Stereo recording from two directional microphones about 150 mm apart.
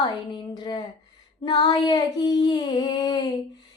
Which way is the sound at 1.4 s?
30° left (ahead or behind).